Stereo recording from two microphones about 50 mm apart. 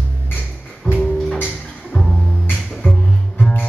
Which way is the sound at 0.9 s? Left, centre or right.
Left.